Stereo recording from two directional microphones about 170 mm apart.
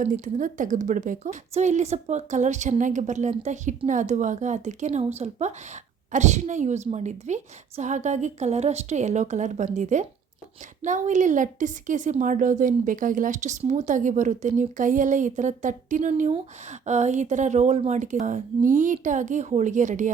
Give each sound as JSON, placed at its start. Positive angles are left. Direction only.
{"t": 0.0, "sound": "a woman's voice", "side_deg": -50}